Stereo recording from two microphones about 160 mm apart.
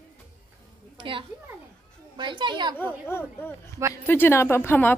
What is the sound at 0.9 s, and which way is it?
A child's voice, 35° right (ahead or behind).